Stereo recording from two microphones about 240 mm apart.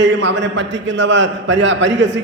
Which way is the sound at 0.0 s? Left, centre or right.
Right.